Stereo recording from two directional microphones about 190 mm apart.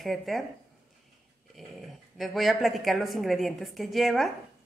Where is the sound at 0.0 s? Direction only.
Centre (ahead or behind).